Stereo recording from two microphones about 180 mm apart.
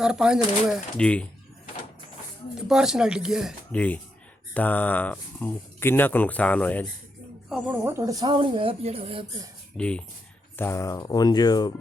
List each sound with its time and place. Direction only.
0.0 s speech: 5° right (ahead or behind)
2.6 s speech: 5° right (ahead or behind)
3.7 s speech: 10° left (ahead or behind)
7.5 s speech: 10° right (ahead or behind); by 9.2 s 35° right (ahead or behind)
9.7 s speech: 5° left (ahead or behind); by 11.7 s 20° left (ahead or behind)